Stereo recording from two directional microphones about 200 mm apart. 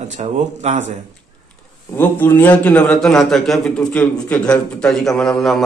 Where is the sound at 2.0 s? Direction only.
10° left (ahead or behind).